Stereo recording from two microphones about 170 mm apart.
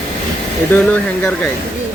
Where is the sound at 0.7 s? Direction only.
10° left (ahead or behind).